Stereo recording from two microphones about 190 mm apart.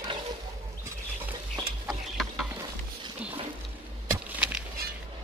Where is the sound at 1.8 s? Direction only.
Centre (ahead or behind).